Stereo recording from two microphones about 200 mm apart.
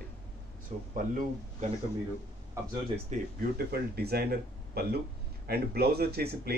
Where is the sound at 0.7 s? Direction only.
35° right (ahead or behind).